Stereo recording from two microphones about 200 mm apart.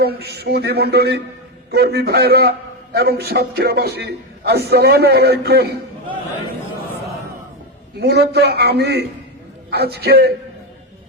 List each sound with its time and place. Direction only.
0.0 s a man's voice: 55° right (ahead or behind)
7.9 s a man's voice: 55° right (ahead or behind)